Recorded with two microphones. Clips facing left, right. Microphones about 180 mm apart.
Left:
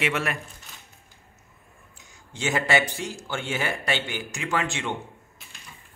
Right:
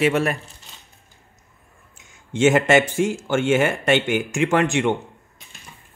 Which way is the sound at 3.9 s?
75° right (ahead or behind).